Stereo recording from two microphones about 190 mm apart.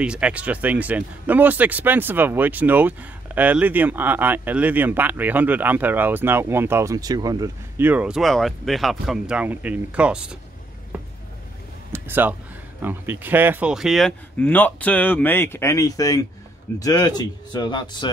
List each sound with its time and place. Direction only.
0.0 s speech: 5° right (ahead or behind)
11.9 s a sound: 10° right (ahead or behind)
12.8 s speech: 10° right (ahead or behind); by 18.1 s 25° left (ahead or behind)